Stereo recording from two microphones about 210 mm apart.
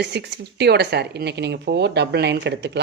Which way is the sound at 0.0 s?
55° right (ahead or behind).